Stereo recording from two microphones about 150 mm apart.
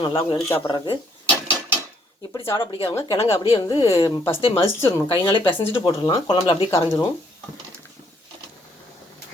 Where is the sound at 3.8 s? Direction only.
20° left (ahead or behind).